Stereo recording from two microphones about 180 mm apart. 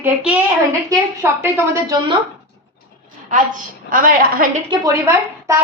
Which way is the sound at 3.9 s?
50° right (ahead or behind).